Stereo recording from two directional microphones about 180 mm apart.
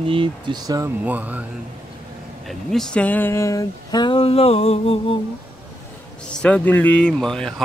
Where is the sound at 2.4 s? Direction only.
Centre (ahead or behind); by 5.1 s 35° left (ahead or behind).